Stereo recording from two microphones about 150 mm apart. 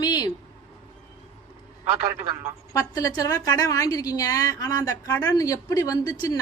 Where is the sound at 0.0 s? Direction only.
25° left (ahead or behind).